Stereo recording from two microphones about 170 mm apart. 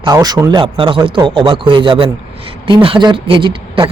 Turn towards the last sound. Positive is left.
turn(degrees=-30)  # may be behind; listen again after turning